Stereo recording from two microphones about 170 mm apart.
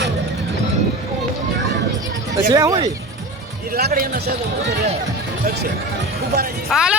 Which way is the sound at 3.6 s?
65° right (ahead or behind).